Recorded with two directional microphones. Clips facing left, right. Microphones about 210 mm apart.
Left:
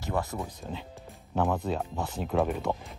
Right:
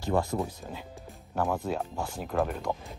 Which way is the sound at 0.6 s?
Centre (ahead or behind).